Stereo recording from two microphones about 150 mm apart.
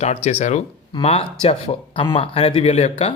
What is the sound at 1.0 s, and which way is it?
A man's voice, 40° left (ahead or behind).